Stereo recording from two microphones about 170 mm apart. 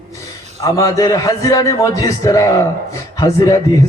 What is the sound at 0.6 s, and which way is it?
A man's voice, 20° left (ahead or behind).